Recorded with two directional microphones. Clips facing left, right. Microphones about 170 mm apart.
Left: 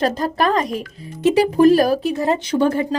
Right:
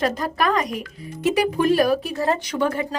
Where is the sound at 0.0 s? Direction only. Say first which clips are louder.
Left 3 dB; 30° left (ahead or behind).